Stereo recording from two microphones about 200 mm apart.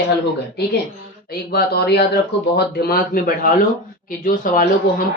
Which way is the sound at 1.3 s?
50° left (ahead or behind).